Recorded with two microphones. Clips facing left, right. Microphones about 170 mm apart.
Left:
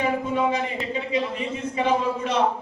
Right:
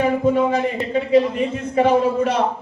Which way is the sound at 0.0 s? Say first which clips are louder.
Right 6 dB; 50° right (ahead or behind).